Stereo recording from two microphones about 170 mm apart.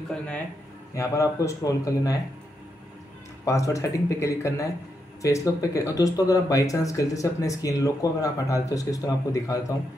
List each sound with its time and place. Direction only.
0.9 s speech: 15° left (ahead or behind)
3.4 s speech: 20° left (ahead or behind)